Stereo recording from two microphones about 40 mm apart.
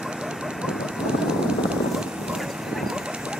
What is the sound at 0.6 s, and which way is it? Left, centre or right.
Vehicle, right.